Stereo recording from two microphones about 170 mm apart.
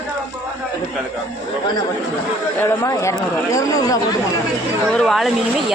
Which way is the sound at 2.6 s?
15° left (ahead or behind).